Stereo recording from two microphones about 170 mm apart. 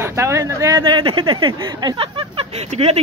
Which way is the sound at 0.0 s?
15° right (ahead or behind).